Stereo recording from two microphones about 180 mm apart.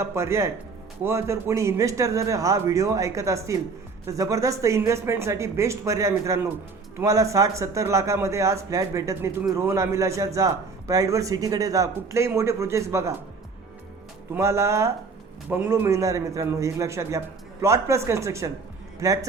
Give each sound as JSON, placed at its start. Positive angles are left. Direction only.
{"t": 0.0, "sound": "a man's voice", "side_deg": -15}
{"t": 14.3, "sound": "a man's voice", "side_deg": -15}